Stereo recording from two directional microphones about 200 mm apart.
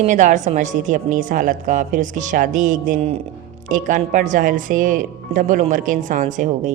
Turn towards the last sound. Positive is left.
turn(degrees=-40)  # may be behind; listen again after turning